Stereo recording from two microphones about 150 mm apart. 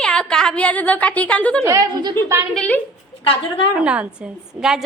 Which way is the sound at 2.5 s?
10° left (ahead or behind).